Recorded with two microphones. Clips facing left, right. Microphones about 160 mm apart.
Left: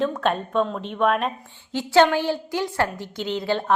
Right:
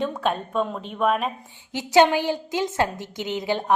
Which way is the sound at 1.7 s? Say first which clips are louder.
Even; 15° right (ahead or behind).